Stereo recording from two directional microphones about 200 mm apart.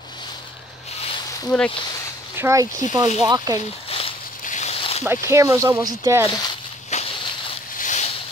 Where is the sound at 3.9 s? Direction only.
30° left (ahead or behind).